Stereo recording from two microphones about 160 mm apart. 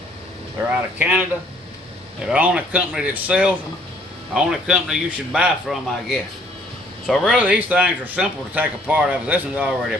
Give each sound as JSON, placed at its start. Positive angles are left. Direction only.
{"t": 0.7, "sound": "speech", "side_deg": -10}
{"t": 2.2, "sound": "speech", "side_deg": -10}